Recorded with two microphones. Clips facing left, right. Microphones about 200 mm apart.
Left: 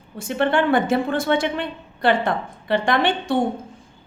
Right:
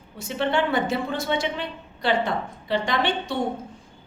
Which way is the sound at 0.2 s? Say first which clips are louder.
Left 4 dB; 55° left (ahead or behind).